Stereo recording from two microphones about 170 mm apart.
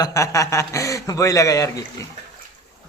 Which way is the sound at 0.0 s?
20° left (ahead or behind).